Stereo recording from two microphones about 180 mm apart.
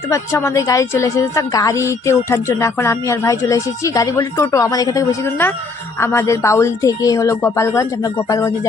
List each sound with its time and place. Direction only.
0.1 s a woman's voice: 15° left (ahead or behind)